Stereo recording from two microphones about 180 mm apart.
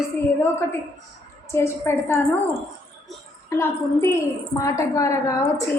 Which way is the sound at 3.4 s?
15° left (ahead or behind).